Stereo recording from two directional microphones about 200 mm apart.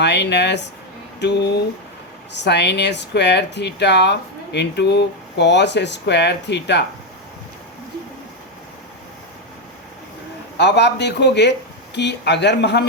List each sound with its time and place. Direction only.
0.0 s speech: 60° left (ahead or behind)
10.6 s speech: 60° left (ahead or behind)